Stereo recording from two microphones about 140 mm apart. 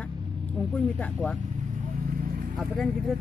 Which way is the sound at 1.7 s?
75° right (ahead or behind).